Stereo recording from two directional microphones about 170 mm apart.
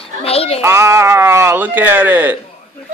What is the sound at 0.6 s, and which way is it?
Speech, 15° right (ahead or behind).